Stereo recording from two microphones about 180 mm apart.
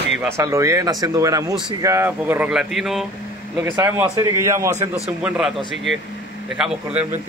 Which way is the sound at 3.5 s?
10° right (ahead or behind).